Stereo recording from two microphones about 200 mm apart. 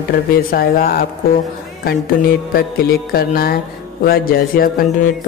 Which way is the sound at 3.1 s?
50° left (ahead or behind).